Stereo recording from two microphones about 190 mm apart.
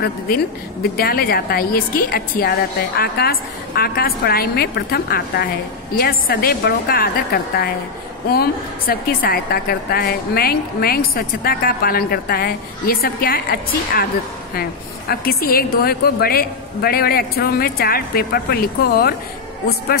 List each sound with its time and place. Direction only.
0.3 s a woman's voice: 55° left (ahead or behind)